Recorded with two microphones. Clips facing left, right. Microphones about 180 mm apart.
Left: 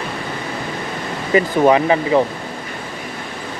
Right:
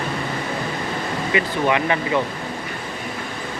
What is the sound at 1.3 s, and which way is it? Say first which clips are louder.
Speech: left 8 dB; 35° left (ahead or behind).